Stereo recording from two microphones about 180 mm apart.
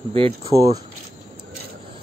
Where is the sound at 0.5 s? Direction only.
20° right (ahead or behind).